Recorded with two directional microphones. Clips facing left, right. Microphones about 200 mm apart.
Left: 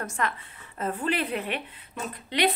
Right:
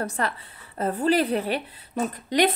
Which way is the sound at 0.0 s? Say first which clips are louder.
Right 3 dB; 35° right (ahead or behind).